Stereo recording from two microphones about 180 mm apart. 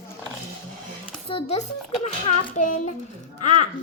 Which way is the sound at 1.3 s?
35° left (ahead or behind).